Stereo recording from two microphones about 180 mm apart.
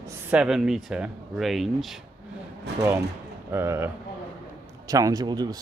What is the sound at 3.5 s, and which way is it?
Speech, 15° right (ahead or behind).